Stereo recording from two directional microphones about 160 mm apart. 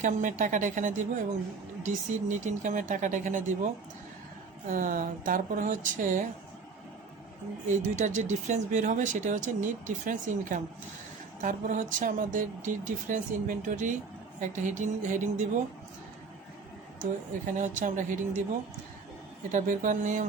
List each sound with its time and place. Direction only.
0.0 s speech: 50° right (ahead or behind)
4.7 s speech: 55° right (ahead or behind)
7.8 s speech: 50° right (ahead or behind)
17.0 s speech: 50° right (ahead or behind)
19.5 s speech: 50° right (ahead or behind)